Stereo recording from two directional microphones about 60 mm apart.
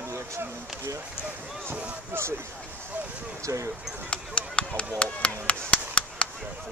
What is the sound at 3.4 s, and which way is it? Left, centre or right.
Speech, right.